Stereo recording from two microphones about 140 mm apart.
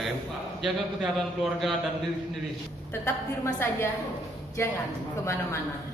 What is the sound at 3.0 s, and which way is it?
A woman's voice, 20° left (ahead or behind).